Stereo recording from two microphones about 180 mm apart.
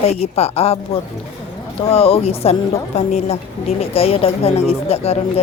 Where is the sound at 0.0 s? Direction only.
35° left (ahead or behind).